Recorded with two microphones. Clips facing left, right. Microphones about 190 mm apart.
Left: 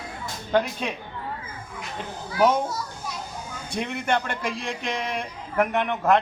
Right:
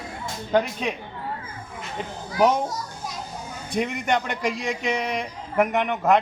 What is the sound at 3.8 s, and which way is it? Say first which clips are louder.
Speech: right 2 dB; 15° right (ahead or behind).